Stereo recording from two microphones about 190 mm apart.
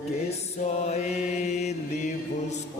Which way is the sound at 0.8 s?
35° left (ahead or behind).